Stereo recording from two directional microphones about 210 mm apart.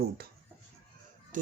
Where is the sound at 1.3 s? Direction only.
40° right (ahead or behind).